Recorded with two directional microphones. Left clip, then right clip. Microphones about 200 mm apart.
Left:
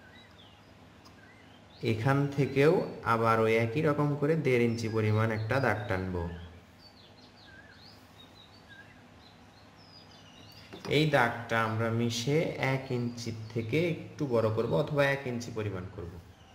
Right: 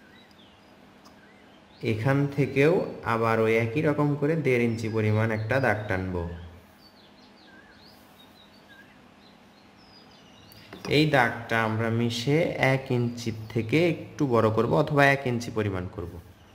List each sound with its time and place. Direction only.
1.8 s speech: centre (ahead or behind)
10.8 s speech: 15° right (ahead or behind)